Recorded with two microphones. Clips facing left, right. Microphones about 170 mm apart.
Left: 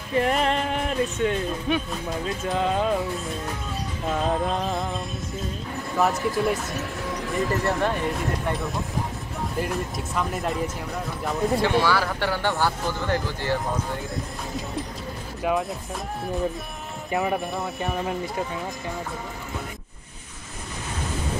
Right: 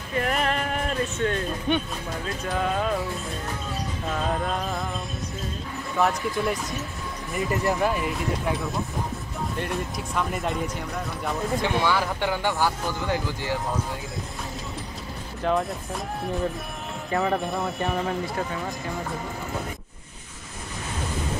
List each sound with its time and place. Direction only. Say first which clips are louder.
0.1 s speech: left 3 dB; 25° left (ahead or behind); by 1.8 s 10° left (ahead or behind)
2.2 s music: left 2 dB; 20° left (ahead or behind)
4.1 s music: left 3 dB; 20° left (ahead or behind)
5.9 s speech: left 1 dB; centre (ahead or behind)
9.6 s speech: left 3 dB; centre (ahead or behind)
11.6 s speech: even; 20° right (ahead or behind)
15.5 s speech: even; 10° left (ahead or behind)
17.1 s speech: even; 15° left (ahead or behind)
17.5 s speech: right 2 dB; centre (ahead or behind)